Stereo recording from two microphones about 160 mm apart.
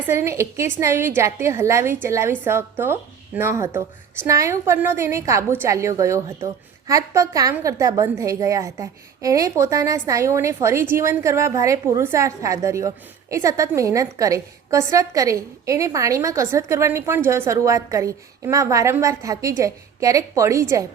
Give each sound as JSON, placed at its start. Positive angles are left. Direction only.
{"t": 0.1, "sound": "a woman's voice", "side_deg": -15}